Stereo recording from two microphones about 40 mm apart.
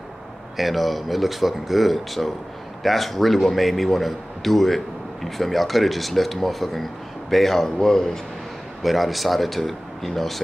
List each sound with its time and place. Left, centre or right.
0.6 s speech: centre
8.8 s speech: centre